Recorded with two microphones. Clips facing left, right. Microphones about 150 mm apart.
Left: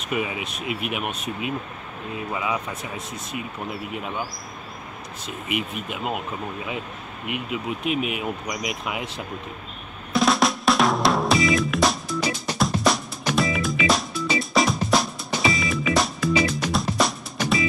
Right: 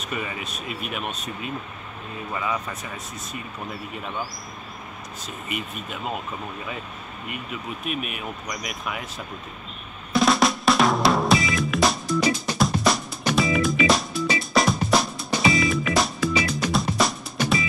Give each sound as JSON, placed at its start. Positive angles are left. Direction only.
{"t": 0.1, "sound": "speech", "side_deg": 10}
{"t": 2.3, "sound": "speech", "side_deg": 10}
{"t": 3.9, "sound": "speech", "side_deg": 10}
{"t": 5.2, "sound": "speech", "side_deg": 90}
{"t": 5.9, "sound": "speech", "side_deg": 10}
{"t": 7.8, "sound": "speech", "side_deg": 90}
{"t": 8.2, "sound": "speech", "side_deg": 15}
{"t": 10.1, "sound": "drum", "side_deg": 0}